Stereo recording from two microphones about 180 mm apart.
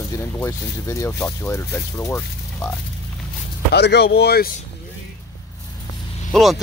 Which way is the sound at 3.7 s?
70° left (ahead or behind).